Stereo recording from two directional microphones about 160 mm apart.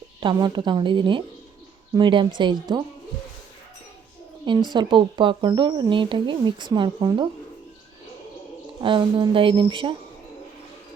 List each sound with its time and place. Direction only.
0.2 s speech: 30° right (ahead or behind)
4.4 s speech: 25° right (ahead or behind)
8.8 s speech: 30° right (ahead or behind)